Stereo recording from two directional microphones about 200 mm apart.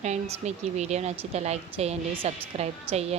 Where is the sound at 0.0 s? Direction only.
35° right (ahead or behind).